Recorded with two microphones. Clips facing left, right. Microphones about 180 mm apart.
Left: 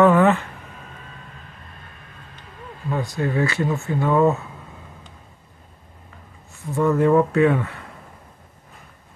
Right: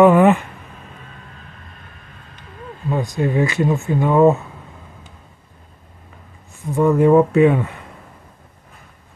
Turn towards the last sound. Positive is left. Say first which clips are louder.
# right 4 dB
turn(degrees=-20)  # may be behind; listen again after turning